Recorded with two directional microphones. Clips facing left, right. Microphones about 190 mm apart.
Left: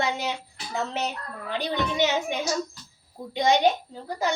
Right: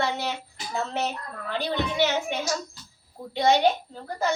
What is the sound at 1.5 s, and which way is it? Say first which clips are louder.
Speech: even; 15° left (ahead or behind).